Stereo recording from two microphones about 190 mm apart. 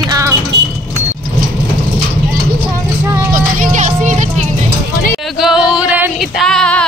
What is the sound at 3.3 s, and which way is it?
Music, 45° right (ahead or behind).